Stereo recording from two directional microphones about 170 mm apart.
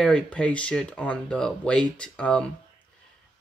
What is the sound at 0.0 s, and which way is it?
Speech, 5° left (ahead or behind).